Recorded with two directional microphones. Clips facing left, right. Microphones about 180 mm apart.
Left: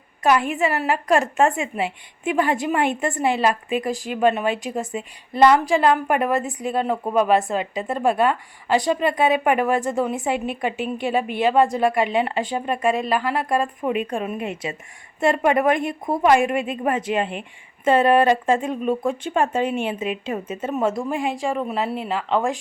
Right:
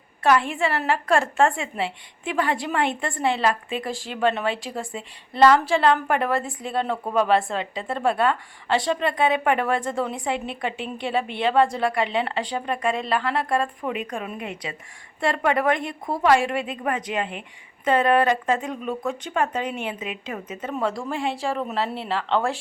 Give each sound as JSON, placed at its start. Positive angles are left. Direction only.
{"t": 0.2, "sound": "a woman's voice", "side_deg": 15}
{"t": 10.3, "sound": "a woman's voice", "side_deg": -25}
{"t": 11.5, "sound": "speech", "side_deg": 20}
{"t": 13.0, "sound": "a woman's voice", "side_deg": 10}
{"t": 14.1, "sound": "speech", "side_deg": 25}
{"t": 21.4, "sound": "a woman's voice", "side_deg": 5}